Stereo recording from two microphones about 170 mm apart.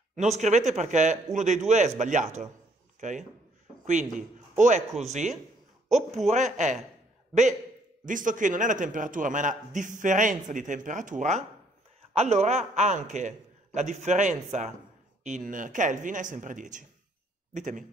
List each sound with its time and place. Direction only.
0.1 s a man's voice: 45° right (ahead or behind)
8.0 s a man's voice: 50° right (ahead or behind)